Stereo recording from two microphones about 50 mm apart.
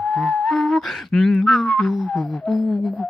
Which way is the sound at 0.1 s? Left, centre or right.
Centre.